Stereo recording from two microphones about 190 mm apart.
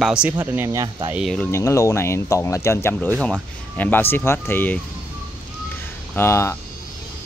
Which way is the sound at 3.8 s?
10° left (ahead or behind).